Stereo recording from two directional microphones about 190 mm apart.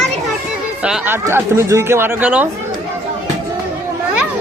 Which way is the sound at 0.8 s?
5° right (ahead or behind).